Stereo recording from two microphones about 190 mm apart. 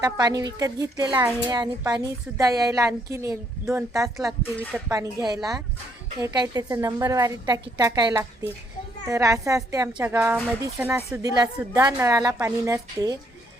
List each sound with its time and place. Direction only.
0.0 s a woman's voice: 20° right (ahead or behind)
4.3 s speech: 10° left (ahead or behind)
4.9 s a woman's voice: 20° right (ahead or behind)